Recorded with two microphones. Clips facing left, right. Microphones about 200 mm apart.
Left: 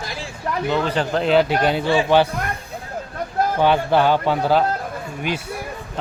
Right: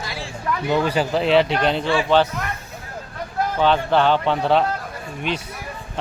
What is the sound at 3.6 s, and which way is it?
A man's voice, 10° left (ahead or behind).